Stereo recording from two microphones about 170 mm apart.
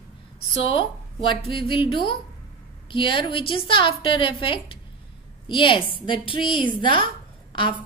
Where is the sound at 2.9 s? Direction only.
30° left (ahead or behind).